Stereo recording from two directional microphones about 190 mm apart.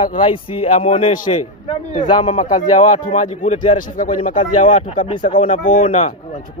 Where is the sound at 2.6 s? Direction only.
40° left (ahead or behind).